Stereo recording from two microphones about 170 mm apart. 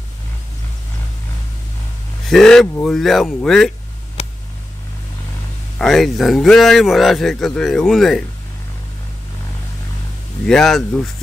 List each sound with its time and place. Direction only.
2.2 s speech: 5° left (ahead or behind)
4.2 s a sound: 40° left (ahead or behind)
5.8 s speech: centre (ahead or behind)
10.4 s speech: 5° left (ahead or behind)